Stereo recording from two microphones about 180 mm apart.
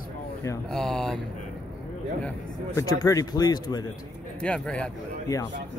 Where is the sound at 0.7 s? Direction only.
5° left (ahead or behind).